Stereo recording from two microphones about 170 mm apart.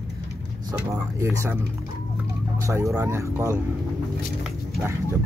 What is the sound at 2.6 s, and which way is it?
Speech, 15° right (ahead or behind).